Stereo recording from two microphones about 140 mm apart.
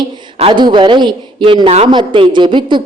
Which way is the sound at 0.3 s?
40° right (ahead or behind).